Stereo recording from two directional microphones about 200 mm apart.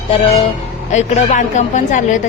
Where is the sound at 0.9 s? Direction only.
35° left (ahead or behind).